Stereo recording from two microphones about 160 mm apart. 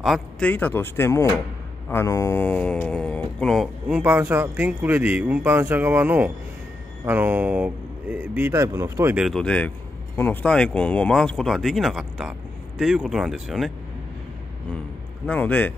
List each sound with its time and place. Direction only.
0.0 s speech: centre (ahead or behind)
0.5 s speech: 10° left (ahead or behind)
3.9 s speech: 10° right (ahead or behind)
9.1 s speech: centre (ahead or behind)
15.2 s speech: 10° left (ahead or behind)